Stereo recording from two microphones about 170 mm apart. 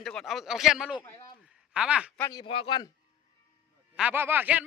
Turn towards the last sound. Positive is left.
turn(degrees=-10)  # may be behind; listen again after turning